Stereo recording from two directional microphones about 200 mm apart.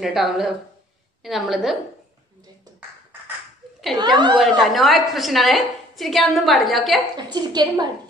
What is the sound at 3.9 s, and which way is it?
Speech, 20° right (ahead or behind).